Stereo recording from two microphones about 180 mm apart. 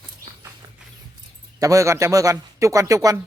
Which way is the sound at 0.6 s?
20° right (ahead or behind).